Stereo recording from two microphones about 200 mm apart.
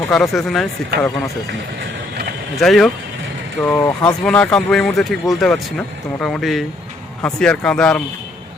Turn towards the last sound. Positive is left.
turn(degrees=5)  # may be behind; listen again after turning